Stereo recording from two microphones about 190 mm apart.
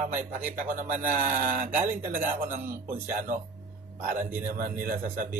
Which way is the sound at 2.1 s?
45° right (ahead or behind).